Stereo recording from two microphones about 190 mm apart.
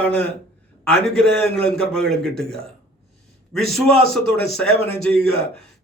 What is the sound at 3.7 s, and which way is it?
A man's voice, centre (ahead or behind).